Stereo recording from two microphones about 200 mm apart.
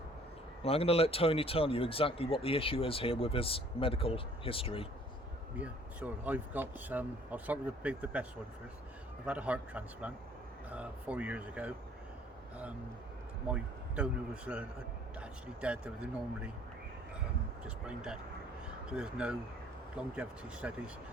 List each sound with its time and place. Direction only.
0.6 s speech: 30° left (ahead or behind)
5.5 s speech: 5° right (ahead or behind)
13.5 s a man's voice: 5° right (ahead or behind)
17.8 s a man's voice: 5° right (ahead or behind)